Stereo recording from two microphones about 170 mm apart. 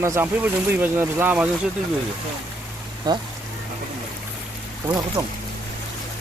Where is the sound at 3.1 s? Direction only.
25° right (ahead or behind).